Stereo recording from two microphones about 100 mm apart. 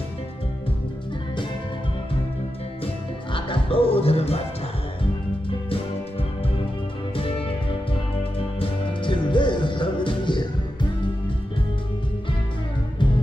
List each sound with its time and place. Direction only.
3.3 s music: 60° left (ahead or behind); by 4.4 s 85° left
7.2 s music: 65° left (ahead or behind)